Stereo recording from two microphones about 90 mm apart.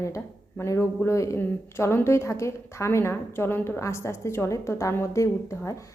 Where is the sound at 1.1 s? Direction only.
35° left (ahead or behind).